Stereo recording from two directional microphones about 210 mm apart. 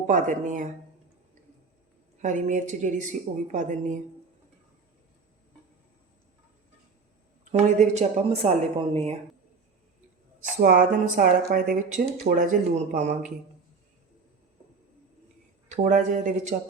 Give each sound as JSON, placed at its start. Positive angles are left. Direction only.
{"t": 0.1, "sound": "speech", "side_deg": -40}
{"t": 2.2, "sound": "speech", "side_deg": -35}
{"t": 7.5, "sound": "speech", "side_deg": -30}
{"t": 10.6, "sound": "speech", "side_deg": -40}
{"t": 15.7, "sound": "speech", "side_deg": -35}